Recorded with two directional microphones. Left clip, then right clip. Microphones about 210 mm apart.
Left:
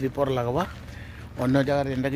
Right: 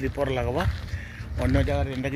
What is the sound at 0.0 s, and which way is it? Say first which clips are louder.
Speech: left 2 dB; 15° left (ahead or behind).